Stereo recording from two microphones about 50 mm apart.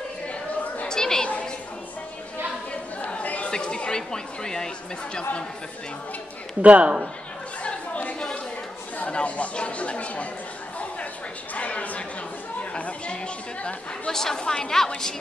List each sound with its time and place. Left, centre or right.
0.8 s chatter: centre
2.7 s chatter: left
3.5 s speech: centre
6.6 s a man's voice: right
7.6 s chatter: left
8.9 s speech: left
11.5 s speech: left
14.1 s speech: centre